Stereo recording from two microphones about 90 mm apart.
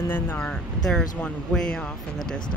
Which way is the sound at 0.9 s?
10° left (ahead or behind).